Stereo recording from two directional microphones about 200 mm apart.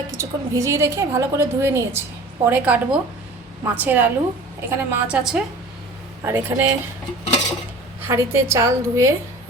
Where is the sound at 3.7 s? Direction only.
10° right (ahead or behind).